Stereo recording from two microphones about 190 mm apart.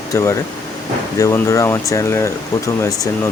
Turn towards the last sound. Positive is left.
turn(degrees=15)  # may be behind; listen again after turning